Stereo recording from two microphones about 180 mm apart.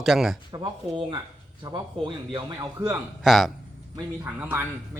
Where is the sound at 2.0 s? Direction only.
25° right (ahead or behind).